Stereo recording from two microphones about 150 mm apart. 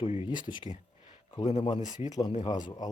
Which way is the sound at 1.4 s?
40° left (ahead or behind).